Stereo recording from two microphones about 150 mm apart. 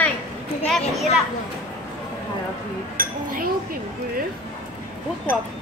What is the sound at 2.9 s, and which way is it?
Chink, 70° right (ahead or behind).